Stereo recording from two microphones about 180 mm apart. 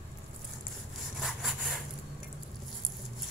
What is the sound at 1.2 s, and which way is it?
Sawing, centre (ahead or behind).